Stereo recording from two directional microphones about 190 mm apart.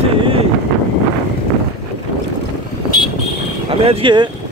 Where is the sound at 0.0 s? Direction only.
30° right (ahead or behind).